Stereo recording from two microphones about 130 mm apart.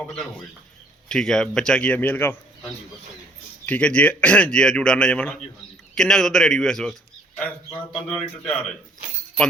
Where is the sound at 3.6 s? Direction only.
10° left (ahead or behind).